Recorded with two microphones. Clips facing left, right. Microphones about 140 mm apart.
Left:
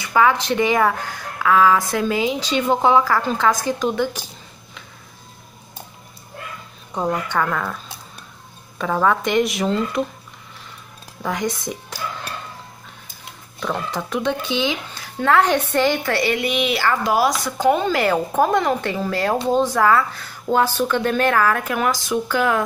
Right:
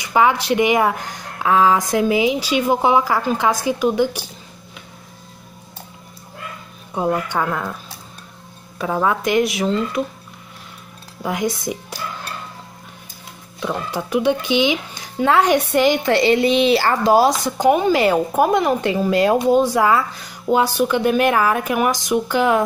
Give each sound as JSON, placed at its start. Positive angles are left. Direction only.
{"t": 0.0, "sound": "speech", "side_deg": -20}
{"t": 6.9, "sound": "speech", "side_deg": -10}
{"t": 8.8, "sound": "speech", "side_deg": -15}
{"t": 11.2, "sound": "speech", "side_deg": -10}
{"t": 13.6, "sound": "speech", "side_deg": -10}